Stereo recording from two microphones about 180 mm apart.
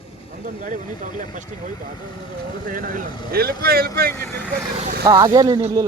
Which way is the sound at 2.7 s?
50° right (ahead or behind).